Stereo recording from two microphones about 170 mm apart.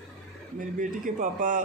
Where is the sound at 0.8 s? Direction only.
50° right (ahead or behind).